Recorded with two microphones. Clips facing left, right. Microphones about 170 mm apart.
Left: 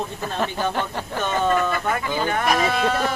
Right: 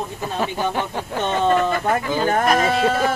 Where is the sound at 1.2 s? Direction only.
25° right (ahead or behind).